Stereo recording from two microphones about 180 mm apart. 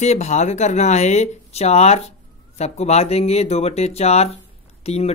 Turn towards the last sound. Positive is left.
turn(degrees=35)  # may be behind; listen again after turning